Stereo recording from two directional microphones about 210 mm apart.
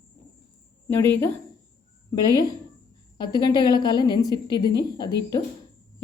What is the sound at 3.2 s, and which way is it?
A woman's voice, 20° left (ahead or behind).